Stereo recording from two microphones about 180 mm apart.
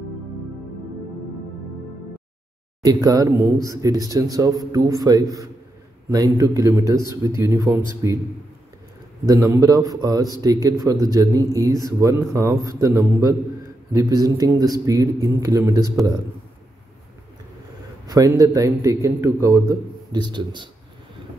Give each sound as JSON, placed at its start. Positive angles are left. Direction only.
{"t": 2.8, "sound": "a man's voice", "side_deg": -20}
{"t": 9.3, "sound": "a man's voice", "side_deg": -20}
{"t": 18.0, "sound": "a man's voice", "side_deg": -20}